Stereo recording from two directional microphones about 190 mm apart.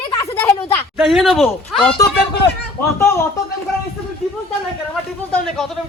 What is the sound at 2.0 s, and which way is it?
Speech, 15° left (ahead or behind).